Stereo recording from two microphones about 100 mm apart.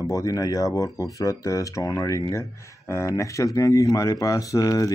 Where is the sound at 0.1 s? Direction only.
35° left (ahead or behind).